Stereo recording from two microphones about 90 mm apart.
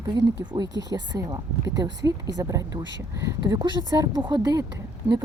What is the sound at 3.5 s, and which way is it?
Speech, 60° right (ahead or behind).